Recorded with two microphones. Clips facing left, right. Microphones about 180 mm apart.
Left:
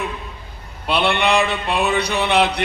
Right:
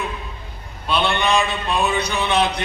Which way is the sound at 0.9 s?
65° left (ahead or behind).